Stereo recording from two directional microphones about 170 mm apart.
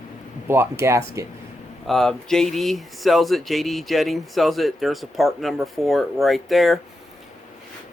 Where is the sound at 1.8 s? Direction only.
Centre (ahead or behind).